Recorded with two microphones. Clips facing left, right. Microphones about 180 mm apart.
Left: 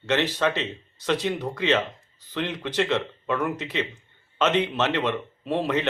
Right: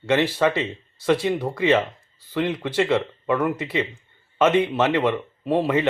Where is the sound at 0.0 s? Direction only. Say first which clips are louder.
Right 4 dB; 10° right (ahead or behind).